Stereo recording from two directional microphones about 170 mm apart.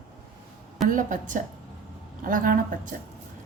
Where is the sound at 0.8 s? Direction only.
50° right (ahead or behind).